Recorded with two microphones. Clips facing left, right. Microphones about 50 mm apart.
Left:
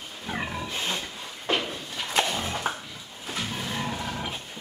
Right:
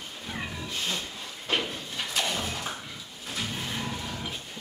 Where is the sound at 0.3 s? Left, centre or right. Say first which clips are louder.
Left 5 dB; left.